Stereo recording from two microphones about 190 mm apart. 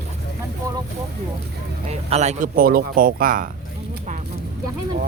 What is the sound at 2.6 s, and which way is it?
Speech, 50° right (ahead or behind).